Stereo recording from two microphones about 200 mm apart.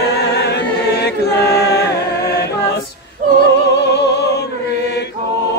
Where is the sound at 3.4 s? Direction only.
60° left (ahead or behind).